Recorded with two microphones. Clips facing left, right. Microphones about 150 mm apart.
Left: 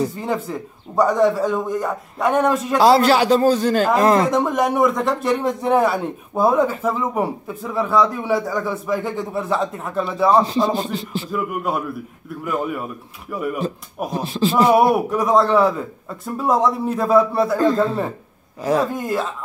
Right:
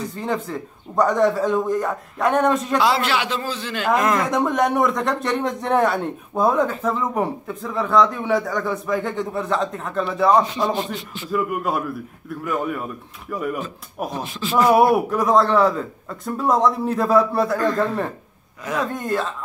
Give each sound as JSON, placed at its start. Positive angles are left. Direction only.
{"t": 0.2, "sound": "speech", "side_deg": 5}
{"t": 2.8, "sound": "a man's voice", "side_deg": 40}
{"t": 4.3, "sound": "speech", "side_deg": 0}
{"t": 10.3, "sound": "a man's voice", "side_deg": 30}
{"t": 11.2, "sound": "speech", "side_deg": 0}
{"t": 14.2, "sound": "a man's voice", "side_deg": 35}
{"t": 14.7, "sound": "speech", "side_deg": 0}
{"t": 18.6, "sound": "a man's voice", "side_deg": 35}
{"t": 18.9, "sound": "speech", "side_deg": 5}